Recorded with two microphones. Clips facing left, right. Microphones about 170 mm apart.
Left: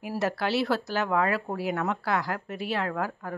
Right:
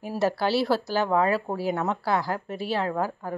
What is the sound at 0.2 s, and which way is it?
Speech, 30° right (ahead or behind).